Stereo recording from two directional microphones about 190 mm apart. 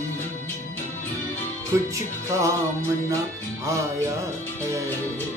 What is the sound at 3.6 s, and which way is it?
Speech, 15° right (ahead or behind).